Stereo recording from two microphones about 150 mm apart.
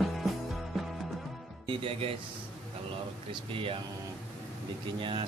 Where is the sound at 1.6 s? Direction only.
40° right (ahead or behind).